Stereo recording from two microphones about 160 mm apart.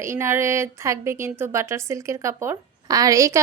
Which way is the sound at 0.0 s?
15° right (ahead or behind).